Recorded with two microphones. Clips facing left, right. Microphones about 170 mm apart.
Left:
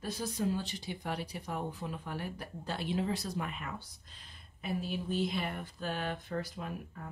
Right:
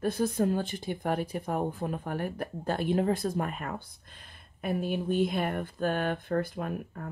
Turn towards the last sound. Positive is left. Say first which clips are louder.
# right 7 dB
turn(degrees=-55)  # may be behind; listen again after turning